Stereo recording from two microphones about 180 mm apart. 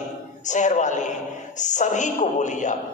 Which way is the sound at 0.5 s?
40° left (ahead or behind).